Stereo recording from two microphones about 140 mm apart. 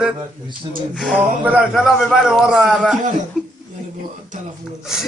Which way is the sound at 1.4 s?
10° right (ahead or behind).